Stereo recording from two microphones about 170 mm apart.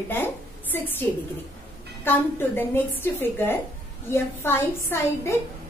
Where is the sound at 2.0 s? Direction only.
10° left (ahead or behind).